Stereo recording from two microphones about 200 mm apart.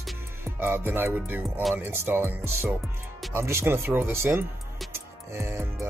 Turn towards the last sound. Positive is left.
turn(degrees=-15)  # may be behind; listen again after turning